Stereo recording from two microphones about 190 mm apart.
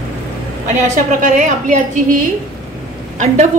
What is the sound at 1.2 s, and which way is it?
Speech, 40° right (ahead or behind).